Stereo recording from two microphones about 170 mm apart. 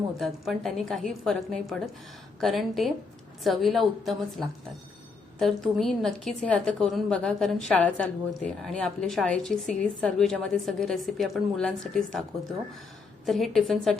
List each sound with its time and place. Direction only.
0.2 s a woman's voice: centre (ahead or behind)
13.2 s a woman's voice: centre (ahead or behind)